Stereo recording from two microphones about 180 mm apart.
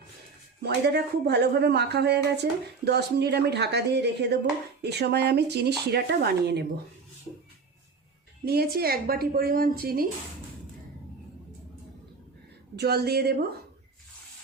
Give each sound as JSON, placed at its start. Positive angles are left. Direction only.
{"t": 0.6, "sound": "speech", "side_deg": -65}
{"t": 8.4, "sound": "a woman's voice", "side_deg": -60}
{"t": 12.7, "sound": "a woman's voice", "side_deg": -65}